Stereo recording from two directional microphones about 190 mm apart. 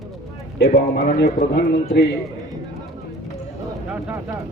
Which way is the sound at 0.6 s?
60° left (ahead or behind).